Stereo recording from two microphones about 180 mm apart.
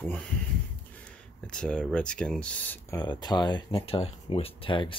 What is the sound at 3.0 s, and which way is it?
Speech, 25° left (ahead or behind).